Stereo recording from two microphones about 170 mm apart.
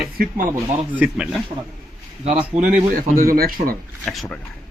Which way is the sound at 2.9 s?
55° right (ahead or behind).